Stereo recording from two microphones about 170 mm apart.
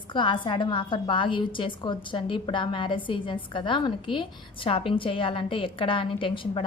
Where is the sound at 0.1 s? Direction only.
30° left (ahead or behind).